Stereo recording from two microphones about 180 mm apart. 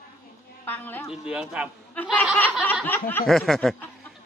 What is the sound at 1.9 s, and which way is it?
Laughter, 10° left (ahead or behind).